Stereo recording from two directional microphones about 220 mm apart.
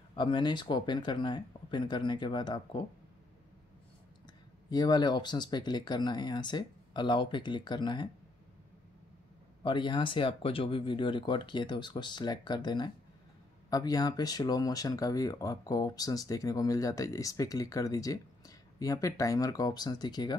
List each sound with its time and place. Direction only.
0.1 s speech: 20° left (ahead or behind)
4.6 s speech: 20° left (ahead or behind)
9.6 s speech: 20° left (ahead or behind)